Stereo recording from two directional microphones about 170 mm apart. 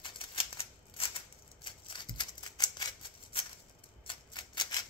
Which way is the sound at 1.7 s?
25° left (ahead or behind).